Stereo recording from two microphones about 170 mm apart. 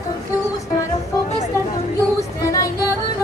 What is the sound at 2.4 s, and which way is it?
Music, 20° left (ahead or behind).